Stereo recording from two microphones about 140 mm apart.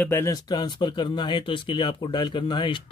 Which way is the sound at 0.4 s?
30° left (ahead or behind).